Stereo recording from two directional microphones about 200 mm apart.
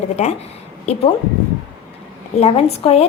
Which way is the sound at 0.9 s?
30° left (ahead or behind).